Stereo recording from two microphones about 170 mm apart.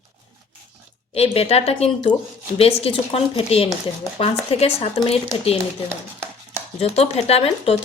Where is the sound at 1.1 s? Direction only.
35° left (ahead or behind).